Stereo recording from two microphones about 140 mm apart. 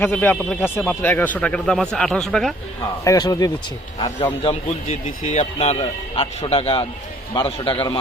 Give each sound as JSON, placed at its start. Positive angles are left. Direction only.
{"t": 0.0, "sound": "speech", "side_deg": 15}
{"t": 3.0, "sound": "speech", "side_deg": 25}
{"t": 5.0, "sound": "a man's voice", "side_deg": 60}